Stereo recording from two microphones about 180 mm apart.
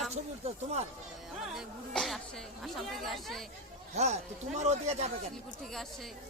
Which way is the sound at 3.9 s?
40° right (ahead or behind).